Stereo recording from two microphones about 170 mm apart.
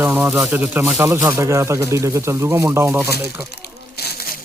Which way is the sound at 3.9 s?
70° left (ahead or behind).